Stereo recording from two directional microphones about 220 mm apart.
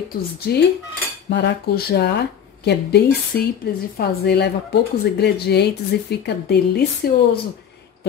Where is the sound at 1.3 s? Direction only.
50° left (ahead or behind).